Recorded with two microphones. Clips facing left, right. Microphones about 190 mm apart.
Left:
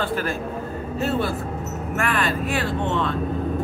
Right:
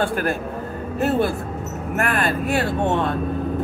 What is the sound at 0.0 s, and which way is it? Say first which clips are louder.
Speech: right 3 dB; 50° right (ahead or behind).